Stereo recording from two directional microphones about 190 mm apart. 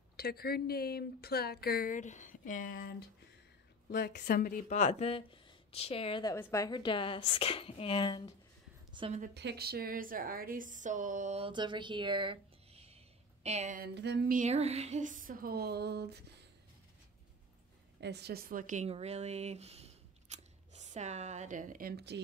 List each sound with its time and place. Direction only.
0.2 s a woman's voice: 55° left (ahead or behind)
3.9 s speech: 60° left (ahead or behind); by 6.3 s 25° left (ahead or behind)
6.3 s a woman's voice: 15° left (ahead or behind)
8.9 s a woman's voice: 30° right (ahead or behind)
9.2 s a woman's voice: 60° right (ahead or behind); by 13.8 s 40° right (ahead or behind)
13.9 s a sound: 60° right (ahead or behind)
14.3 s speech: 35° right (ahead or behind); by 16.4 s 60° right (ahead or behind)
18.0 s speech: 60° right (ahead or behind)